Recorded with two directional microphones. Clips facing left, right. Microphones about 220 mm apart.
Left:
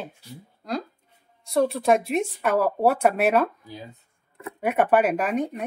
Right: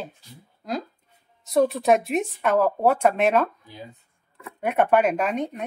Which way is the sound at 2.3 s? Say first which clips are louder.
Right 3 dB; 10° left (ahead or behind).